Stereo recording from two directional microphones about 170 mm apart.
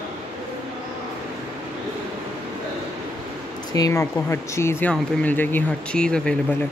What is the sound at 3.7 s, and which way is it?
Speech, 20° left (ahead or behind).